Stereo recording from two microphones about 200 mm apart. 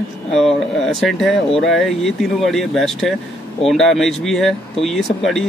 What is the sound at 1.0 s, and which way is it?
Speech, centre (ahead or behind).